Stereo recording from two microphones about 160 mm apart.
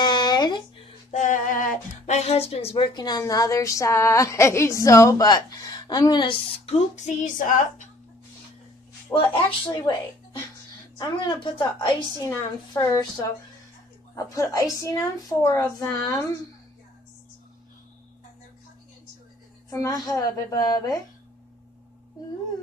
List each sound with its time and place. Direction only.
0.0 s a sound: 25° left (ahead or behind)
1.1 s speech: 50° left (ahead or behind); by 6.8 s 35° left (ahead or behind)
7.2 s speech: 55° left (ahead or behind)
9.1 s speech: 35° left (ahead or behind)
11.0 s speech: 25° left (ahead or behind)
19.7 s speech: 20° left (ahead or behind)